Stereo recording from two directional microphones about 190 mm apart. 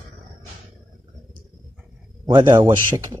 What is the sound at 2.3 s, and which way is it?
Speech, 25° right (ahead or behind).